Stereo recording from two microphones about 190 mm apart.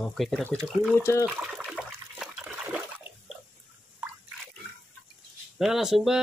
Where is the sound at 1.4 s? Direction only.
Centre (ahead or behind).